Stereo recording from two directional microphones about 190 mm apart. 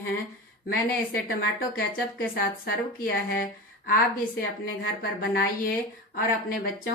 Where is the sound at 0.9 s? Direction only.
50° left (ahead or behind).